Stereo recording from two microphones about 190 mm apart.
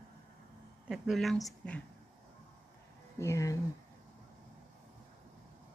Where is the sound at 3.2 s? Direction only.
15° left (ahead or behind).